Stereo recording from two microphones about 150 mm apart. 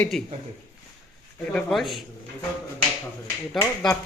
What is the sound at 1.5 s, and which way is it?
Speech, centre (ahead or behind).